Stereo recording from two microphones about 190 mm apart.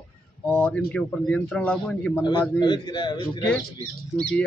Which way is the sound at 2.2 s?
25° left (ahead or behind).